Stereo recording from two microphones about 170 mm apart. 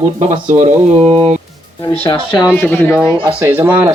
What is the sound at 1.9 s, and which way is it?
Speech, 30° left (ahead or behind).